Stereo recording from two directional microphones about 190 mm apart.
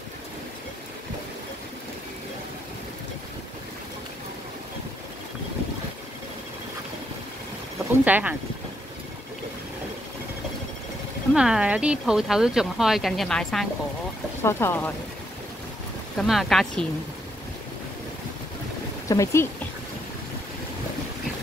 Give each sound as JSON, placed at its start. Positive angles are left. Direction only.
{"t": 8.0, "sound": "speech", "side_deg": -5}
{"t": 11.3, "sound": "speech", "side_deg": -5}
{"t": 16.2, "sound": "speech", "side_deg": 0}
{"t": 19.0, "sound": "speech", "side_deg": 15}